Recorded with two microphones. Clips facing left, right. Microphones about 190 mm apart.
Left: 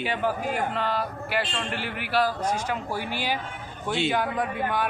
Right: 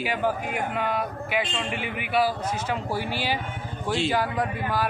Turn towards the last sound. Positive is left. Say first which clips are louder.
# even
turn(degrees=0)  # may be behind; listen again after turning